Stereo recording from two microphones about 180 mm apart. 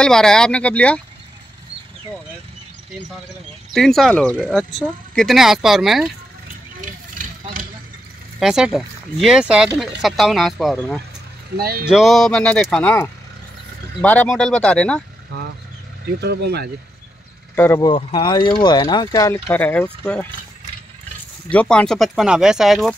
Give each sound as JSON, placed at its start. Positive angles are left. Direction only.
{"t": 0.0, "sound": "speech", "side_deg": 5}
{"t": 3.7, "sound": "speech", "side_deg": 0}
{"t": 6.8, "sound": "a sound", "side_deg": -45}
{"t": 8.4, "sound": "speech", "side_deg": -5}
{"t": 11.5, "sound": "speech", "side_deg": -55}
{"t": 11.8, "sound": "speech", "side_deg": -5}
{"t": 16.2, "sound": "speech", "side_deg": -65}
{"t": 17.7, "sound": "speech", "side_deg": 25}
{"t": 21.5, "sound": "speech", "side_deg": 5}